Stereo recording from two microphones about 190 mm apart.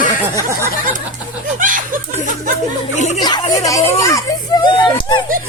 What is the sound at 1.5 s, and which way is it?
Chuckle, 45° right (ahead or behind).